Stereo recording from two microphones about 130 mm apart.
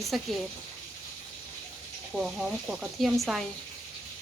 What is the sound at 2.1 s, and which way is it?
Speech, 5° right (ahead or behind).